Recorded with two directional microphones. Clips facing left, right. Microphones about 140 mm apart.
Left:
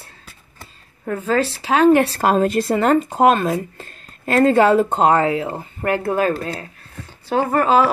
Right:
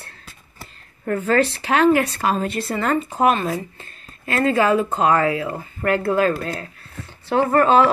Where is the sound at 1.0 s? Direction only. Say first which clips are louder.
Right 1 dB; 10° left (ahead or behind).